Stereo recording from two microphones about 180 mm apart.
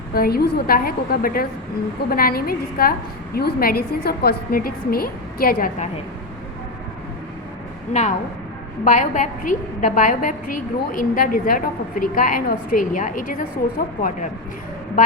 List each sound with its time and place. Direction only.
0.1 s a woman's voice: 55° left (ahead or behind)
7.9 s a woman's voice: 40° left (ahead or behind)